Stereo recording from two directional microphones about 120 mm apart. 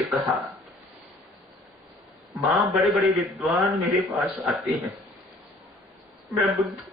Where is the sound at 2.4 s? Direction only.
Centre (ahead or behind).